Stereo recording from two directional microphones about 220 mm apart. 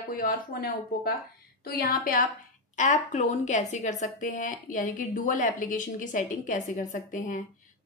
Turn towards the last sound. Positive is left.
turn(degrees=35)  # may be behind; listen again after turning